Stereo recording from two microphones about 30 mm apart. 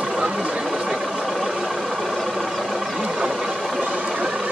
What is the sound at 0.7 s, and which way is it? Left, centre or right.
Vehicle, centre.